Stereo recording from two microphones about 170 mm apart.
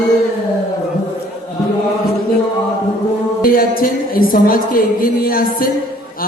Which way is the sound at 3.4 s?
60° left (ahead or behind).